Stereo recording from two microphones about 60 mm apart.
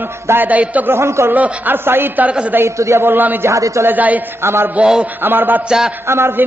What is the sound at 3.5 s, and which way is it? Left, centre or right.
Speech, right.